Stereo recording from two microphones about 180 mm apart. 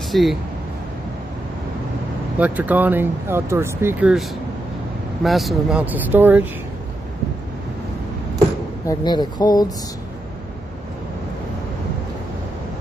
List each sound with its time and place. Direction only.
0.1 s speech: centre (ahead or behind)
2.3 s speech: 10° right (ahead or behind)
8.8 s speech: 25° left (ahead or behind)